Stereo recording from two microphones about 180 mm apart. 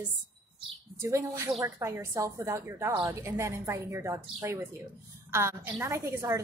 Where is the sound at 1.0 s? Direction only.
15° right (ahead or behind).